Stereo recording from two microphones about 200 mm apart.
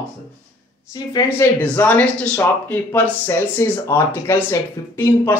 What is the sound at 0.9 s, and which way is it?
Speech, 20° left (ahead or behind).